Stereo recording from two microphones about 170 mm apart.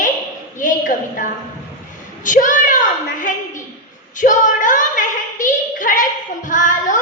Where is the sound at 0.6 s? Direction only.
50° left (ahead or behind).